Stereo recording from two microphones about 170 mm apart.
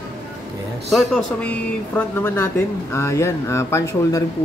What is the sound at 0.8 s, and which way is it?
Speech, centre (ahead or behind).